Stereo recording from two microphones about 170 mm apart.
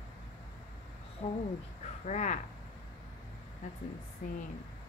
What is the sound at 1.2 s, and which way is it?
Speech, 40° left (ahead or behind).